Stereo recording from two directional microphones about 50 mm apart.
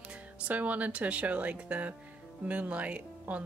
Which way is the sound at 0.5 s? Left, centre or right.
Right.